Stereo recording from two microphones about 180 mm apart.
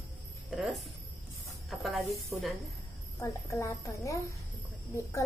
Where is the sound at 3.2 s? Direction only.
15° left (ahead or behind).